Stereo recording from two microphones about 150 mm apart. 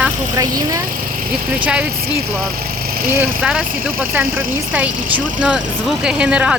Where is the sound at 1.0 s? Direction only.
70° right (ahead or behind).